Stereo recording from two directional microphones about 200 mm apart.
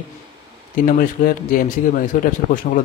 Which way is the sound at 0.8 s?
45° left (ahead or behind).